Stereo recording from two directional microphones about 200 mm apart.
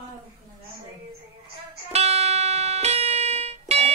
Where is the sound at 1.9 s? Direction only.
30° right (ahead or behind).